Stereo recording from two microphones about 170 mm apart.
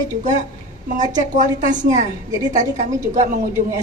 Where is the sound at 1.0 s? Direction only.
45° right (ahead or behind).